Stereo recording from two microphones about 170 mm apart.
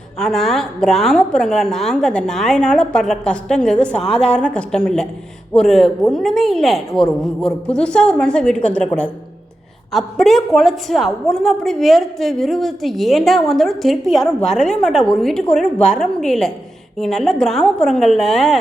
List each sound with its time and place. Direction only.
0.2 s a woman's voice: centre (ahead or behind)